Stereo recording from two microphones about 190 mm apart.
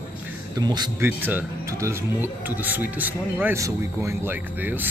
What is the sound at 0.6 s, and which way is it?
Speech, 20° right (ahead or behind).